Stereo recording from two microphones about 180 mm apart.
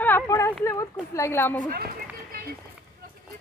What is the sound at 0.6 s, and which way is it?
Speech, 15° left (ahead or behind).